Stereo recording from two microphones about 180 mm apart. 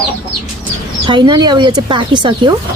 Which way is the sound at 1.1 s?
25° right (ahead or behind).